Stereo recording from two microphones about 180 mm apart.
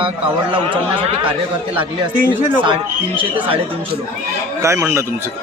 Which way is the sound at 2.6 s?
30° right (ahead or behind).